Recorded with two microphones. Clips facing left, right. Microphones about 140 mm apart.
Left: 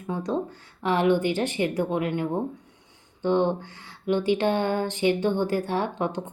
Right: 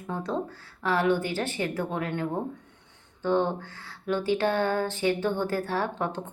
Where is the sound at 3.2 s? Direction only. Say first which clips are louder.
Left 3 dB; 20° left (ahead or behind).